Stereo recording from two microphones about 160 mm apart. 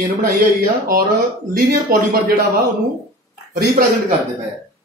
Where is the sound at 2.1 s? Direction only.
60° right (ahead or behind).